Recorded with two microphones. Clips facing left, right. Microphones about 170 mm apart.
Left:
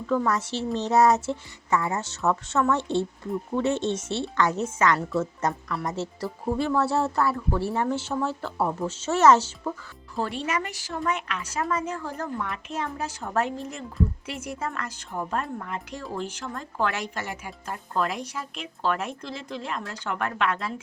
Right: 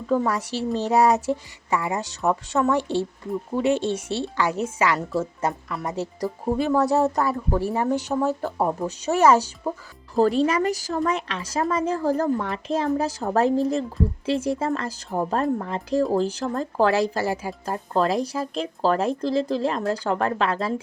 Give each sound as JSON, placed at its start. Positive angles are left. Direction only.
{"t": 0.3, "sound": "speech", "side_deg": -15}
{"t": 8.1, "sound": "speech", "side_deg": -45}
{"t": 8.5, "sound": "speech", "side_deg": -15}
{"t": 10.2, "sound": "speech", "side_deg": -35}